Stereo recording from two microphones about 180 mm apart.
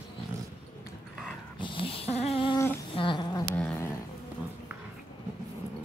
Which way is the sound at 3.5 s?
15° left (ahead or behind).